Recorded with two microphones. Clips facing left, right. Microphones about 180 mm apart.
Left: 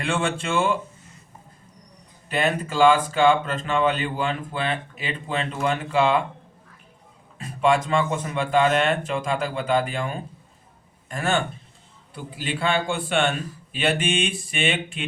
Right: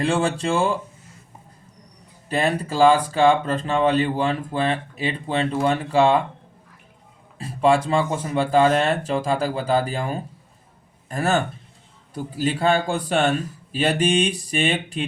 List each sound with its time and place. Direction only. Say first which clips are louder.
0.0 s speech: right 4 dB; 35° right (ahead or behind)
2.3 s speech: right 2 dB; 35° right (ahead or behind)
7.3 s speech: right 2 dB; 30° right (ahead or behind)